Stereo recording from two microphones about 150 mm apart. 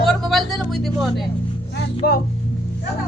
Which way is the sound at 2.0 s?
90° left.